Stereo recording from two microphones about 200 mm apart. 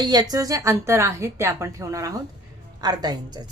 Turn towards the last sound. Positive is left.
turn(degrees=-20)  # may be behind; listen again after turning